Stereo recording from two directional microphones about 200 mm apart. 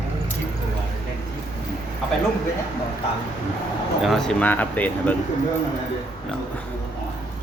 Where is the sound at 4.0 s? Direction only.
Centre (ahead or behind).